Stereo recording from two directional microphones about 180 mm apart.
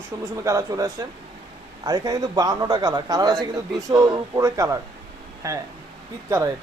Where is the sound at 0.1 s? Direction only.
20° right (ahead or behind).